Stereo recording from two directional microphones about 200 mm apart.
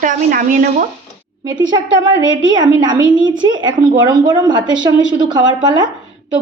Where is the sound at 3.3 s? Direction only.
70° right (ahead or behind).